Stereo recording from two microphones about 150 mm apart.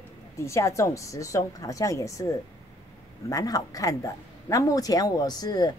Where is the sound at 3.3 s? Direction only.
25° left (ahead or behind).